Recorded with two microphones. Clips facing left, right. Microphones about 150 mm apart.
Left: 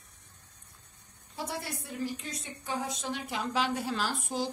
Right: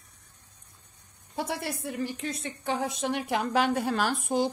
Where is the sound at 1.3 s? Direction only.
65° right (ahead or behind).